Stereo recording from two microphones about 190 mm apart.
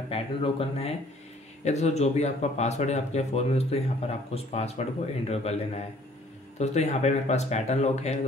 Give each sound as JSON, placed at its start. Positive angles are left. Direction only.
{"t": 0.1, "sound": "speech", "side_deg": 30}